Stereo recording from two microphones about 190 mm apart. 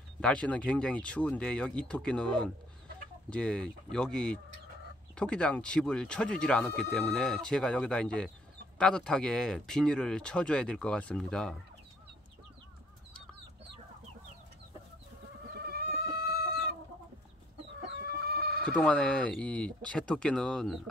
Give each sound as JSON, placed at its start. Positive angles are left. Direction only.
{"t": 0.2, "sound": "speech", "side_deg": 5}
{"t": 15.6, "sound": "chicken", "side_deg": -55}
{"t": 18.3, "sound": "bleat", "side_deg": -55}
{"t": 18.7, "sound": "speech", "side_deg": 5}